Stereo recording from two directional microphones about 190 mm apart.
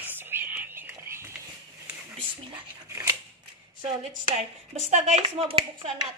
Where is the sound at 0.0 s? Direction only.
10° right (ahead or behind).